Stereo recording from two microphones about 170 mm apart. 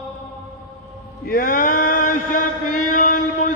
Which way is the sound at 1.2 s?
55° left (ahead or behind).